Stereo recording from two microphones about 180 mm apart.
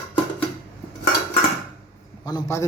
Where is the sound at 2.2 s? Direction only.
20° left (ahead or behind).